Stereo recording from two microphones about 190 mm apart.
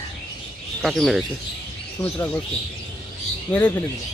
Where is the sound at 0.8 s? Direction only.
Centre (ahead or behind).